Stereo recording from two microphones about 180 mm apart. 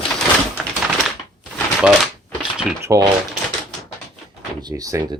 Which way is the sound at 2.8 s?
20° right (ahead or behind).